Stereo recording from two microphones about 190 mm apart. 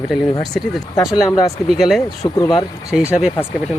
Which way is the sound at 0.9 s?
20° left (ahead or behind).